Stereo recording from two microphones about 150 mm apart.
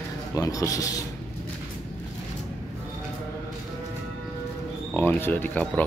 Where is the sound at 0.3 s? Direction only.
25° left (ahead or behind).